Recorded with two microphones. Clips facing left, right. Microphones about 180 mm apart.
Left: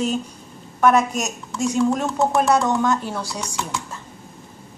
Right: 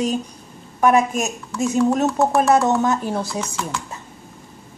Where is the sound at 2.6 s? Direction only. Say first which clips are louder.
Right 2 dB; 25° right (ahead or behind).